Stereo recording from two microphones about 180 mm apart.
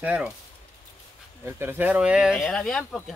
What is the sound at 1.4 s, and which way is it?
Speech, 15° right (ahead or behind).